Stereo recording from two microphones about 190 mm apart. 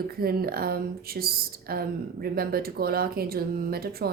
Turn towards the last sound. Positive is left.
turn(degrees=-55)  # may be behind; listen again after turning